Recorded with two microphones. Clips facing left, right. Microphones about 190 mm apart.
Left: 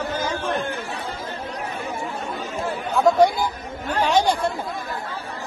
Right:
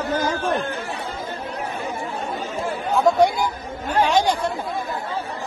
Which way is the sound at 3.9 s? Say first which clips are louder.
Right 1 dB; 10° right (ahead or behind).